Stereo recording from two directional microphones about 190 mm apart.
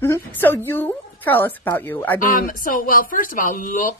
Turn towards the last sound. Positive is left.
turn(degrees=45)  # may be behind; listen again after turning